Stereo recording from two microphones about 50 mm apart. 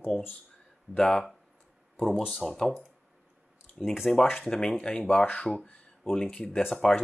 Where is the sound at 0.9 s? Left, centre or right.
Centre.